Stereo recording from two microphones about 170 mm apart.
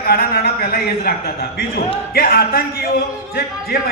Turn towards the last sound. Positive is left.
turn(degrees=60)  # may be behind; listen again after turning